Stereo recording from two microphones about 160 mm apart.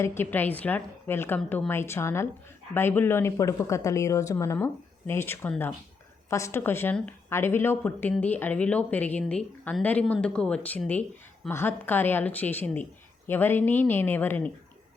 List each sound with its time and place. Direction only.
0.0 s a woman's voice: 15° left (ahead or behind)